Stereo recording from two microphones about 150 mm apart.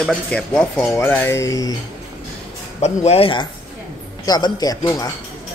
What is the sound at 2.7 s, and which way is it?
Speech, 50° left (ahead or behind).